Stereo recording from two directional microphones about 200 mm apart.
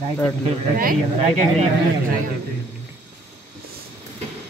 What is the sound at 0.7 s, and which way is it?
Speech, 45° right (ahead or behind).